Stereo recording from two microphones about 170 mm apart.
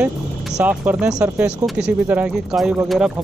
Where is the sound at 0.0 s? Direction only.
5° right (ahead or behind).